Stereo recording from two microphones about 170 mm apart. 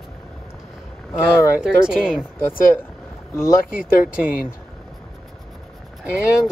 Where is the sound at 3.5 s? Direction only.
55° left (ahead or behind).